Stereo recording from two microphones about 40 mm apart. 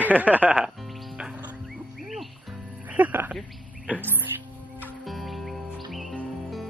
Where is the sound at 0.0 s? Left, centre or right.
Right.